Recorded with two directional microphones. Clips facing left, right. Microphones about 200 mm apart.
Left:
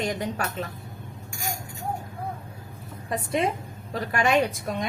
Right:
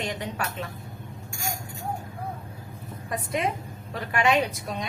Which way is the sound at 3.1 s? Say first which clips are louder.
Left 3 dB; 30° left (ahead or behind).